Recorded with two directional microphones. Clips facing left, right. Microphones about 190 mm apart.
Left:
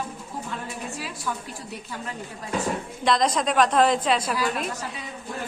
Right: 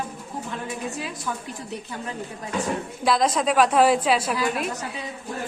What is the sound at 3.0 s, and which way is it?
A woman's voice, 5° right (ahead or behind).